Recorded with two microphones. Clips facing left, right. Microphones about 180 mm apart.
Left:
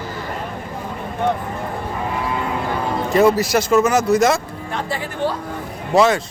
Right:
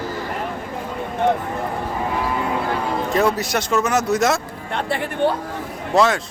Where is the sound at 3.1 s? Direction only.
Centre (ahead or behind).